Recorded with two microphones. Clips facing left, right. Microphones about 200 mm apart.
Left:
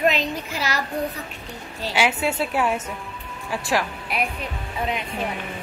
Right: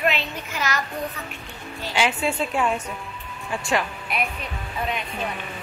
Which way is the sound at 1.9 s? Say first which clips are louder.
Left 1 dB; 10° left (ahead or behind).